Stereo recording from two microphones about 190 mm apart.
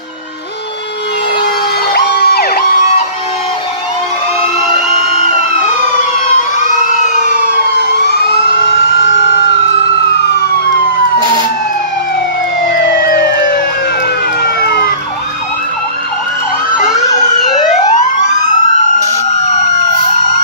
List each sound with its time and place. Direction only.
2.0 s emergency vehicle: 60° left (ahead or behind)
7.2 s emergency vehicle: 50° right (ahead or behind)